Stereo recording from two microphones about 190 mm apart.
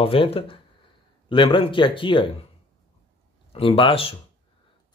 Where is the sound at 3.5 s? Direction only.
30° left (ahead or behind).